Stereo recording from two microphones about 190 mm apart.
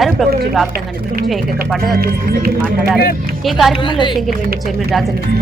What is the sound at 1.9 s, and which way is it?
Speech, 50° right (ahead or behind).